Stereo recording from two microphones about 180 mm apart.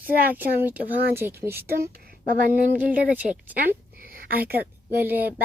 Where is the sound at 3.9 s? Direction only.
55° right (ahead or behind).